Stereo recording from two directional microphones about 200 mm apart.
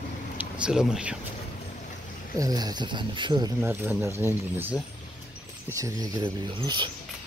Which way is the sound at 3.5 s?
10° right (ahead or behind).